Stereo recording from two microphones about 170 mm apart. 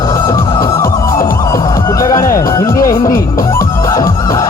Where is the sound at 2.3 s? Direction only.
20° left (ahead or behind).